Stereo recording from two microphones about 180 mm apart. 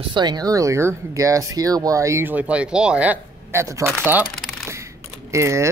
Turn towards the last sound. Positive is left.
turn(degrees=-15)  # may be behind; listen again after turning